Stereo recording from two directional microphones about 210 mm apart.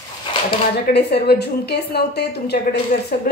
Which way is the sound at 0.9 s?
50° left (ahead or behind).